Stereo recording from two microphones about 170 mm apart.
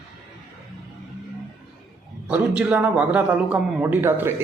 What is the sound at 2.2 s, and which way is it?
A man's voice, 5° right (ahead or behind).